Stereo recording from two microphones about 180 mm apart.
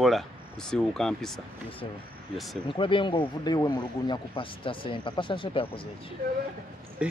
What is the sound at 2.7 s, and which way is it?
Speech, 30° left (ahead or behind).